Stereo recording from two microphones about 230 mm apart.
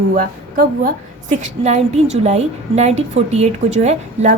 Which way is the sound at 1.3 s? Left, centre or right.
Right.